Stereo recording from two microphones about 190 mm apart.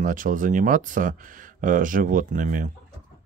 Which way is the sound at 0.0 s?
45° right (ahead or behind).